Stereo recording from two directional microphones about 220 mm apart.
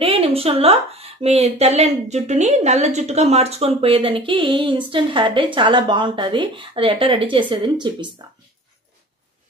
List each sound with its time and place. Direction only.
0.0 s speech: 25° right (ahead or behind)